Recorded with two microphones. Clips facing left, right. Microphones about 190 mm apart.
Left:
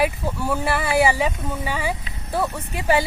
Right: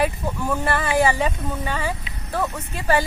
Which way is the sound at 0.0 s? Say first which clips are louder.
Left 1 dB; 10° left (ahead or behind).